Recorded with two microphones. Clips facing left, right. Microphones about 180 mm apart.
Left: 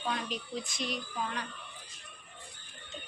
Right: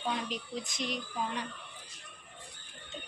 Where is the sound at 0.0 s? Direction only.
20° right (ahead or behind).